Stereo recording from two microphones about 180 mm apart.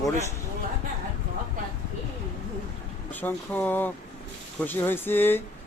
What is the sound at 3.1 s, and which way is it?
Speech, 10° left (ahead or behind).